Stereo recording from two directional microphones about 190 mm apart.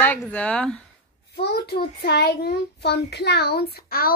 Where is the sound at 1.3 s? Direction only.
60° left (ahead or behind).